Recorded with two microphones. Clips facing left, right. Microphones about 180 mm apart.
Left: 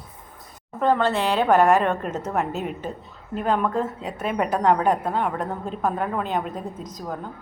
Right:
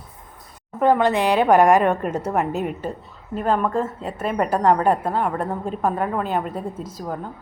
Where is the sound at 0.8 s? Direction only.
15° right (ahead or behind).